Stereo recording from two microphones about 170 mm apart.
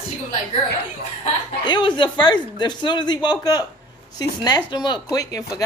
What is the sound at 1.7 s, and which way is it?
Speech, 25° left (ahead or behind).